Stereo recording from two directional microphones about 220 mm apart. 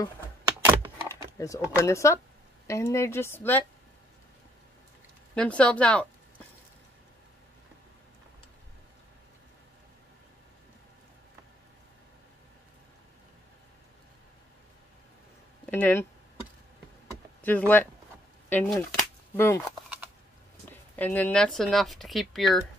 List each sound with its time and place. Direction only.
0.7 s computer keyboard: 20° right (ahead or behind)
1.4 s a woman's voice: 15° left (ahead or behind)
5.3 s speech: 5° left (ahead or behind)
15.6 s speech: 10° left (ahead or behind)
17.4 s speech: 10° left (ahead or behind)
20.9 s speech: 5° left (ahead or behind)